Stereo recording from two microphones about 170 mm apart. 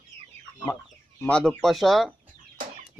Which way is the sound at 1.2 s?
5° left (ahead or behind).